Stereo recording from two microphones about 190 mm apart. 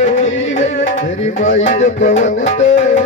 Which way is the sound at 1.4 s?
40° left (ahead or behind).